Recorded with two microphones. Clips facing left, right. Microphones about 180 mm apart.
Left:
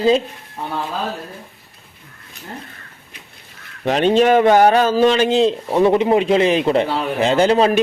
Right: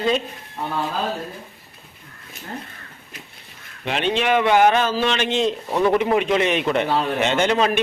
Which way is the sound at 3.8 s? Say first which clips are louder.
Left 7 dB; 40° left (ahead or behind).